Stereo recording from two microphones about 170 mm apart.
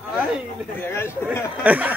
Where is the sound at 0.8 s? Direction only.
15° left (ahead or behind).